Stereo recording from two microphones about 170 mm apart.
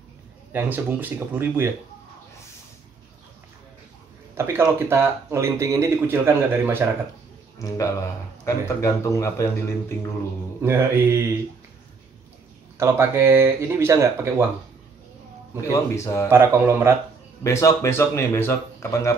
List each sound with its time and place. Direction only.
0.5 s speech: 10° right (ahead or behind)
4.4 s speech: 15° right (ahead or behind)
7.6 s speech: 20° left (ahead or behind)
10.6 s speech: 15° right (ahead or behind)
12.7 s speech: 15° right (ahead or behind)
15.6 s speech: 15° left (ahead or behind)
16.3 s speech: 15° right (ahead or behind)
17.4 s speech: 15° left (ahead or behind)